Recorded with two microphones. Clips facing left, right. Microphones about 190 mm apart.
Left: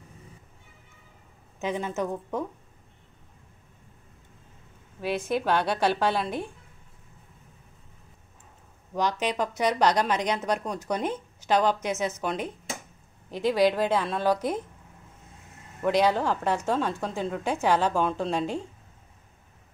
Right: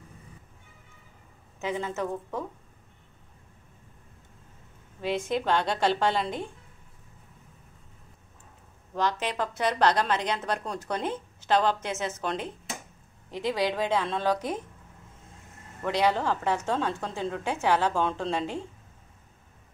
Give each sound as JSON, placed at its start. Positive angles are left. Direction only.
{"t": 1.6, "sound": "a woman's voice", "side_deg": 15}
{"t": 5.0, "sound": "a woman's voice", "side_deg": 10}
{"t": 8.9, "sound": "a woman's voice", "side_deg": 15}
{"t": 15.8, "sound": "a woman's voice", "side_deg": 10}